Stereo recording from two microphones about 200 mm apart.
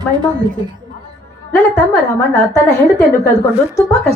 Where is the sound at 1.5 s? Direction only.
15° left (ahead or behind).